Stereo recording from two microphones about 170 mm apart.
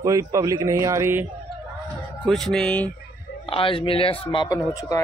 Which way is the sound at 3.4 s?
30° left (ahead or behind).